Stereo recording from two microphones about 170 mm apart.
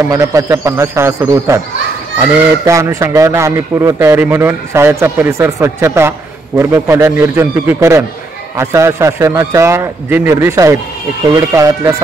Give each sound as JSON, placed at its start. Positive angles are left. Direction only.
{"t": 0.1, "sound": "a man's voice", "side_deg": -20}